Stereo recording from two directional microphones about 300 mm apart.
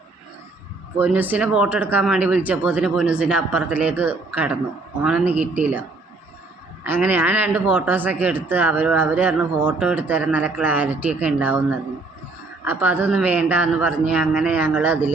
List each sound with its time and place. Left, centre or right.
0.9 s speech: centre
6.8 s speech: centre